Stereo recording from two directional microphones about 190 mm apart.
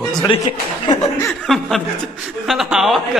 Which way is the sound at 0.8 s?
20° left (ahead or behind).